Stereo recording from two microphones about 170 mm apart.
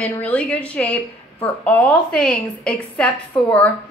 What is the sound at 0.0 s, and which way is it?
A woman's voice, 5° left (ahead or behind).